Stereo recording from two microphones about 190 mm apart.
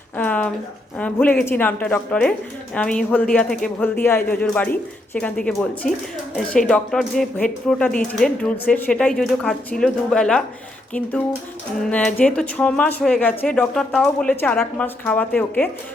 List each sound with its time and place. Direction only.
0.2 s a sound: 5° left (ahead or behind)
0.9 s speech: 5° left (ahead or behind)
11.9 s speech: 5° left (ahead or behind)